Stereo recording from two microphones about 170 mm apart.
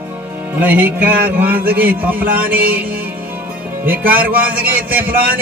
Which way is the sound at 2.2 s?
60° right (ahead or behind).